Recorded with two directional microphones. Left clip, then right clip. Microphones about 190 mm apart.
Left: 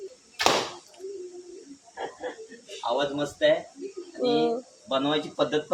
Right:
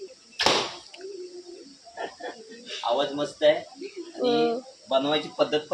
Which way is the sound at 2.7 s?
Centre (ahead or behind).